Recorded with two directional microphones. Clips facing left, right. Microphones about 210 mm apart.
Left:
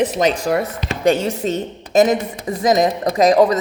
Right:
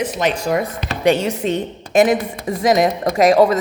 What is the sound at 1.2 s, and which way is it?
Speech, 40° left (ahead or behind).